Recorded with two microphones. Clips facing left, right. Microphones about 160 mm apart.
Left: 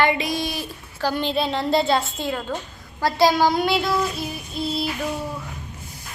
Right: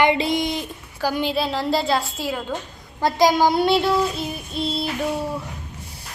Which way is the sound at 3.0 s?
20° right (ahead or behind).